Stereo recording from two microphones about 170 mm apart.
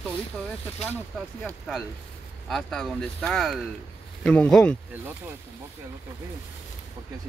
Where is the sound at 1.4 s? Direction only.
Centre (ahead or behind).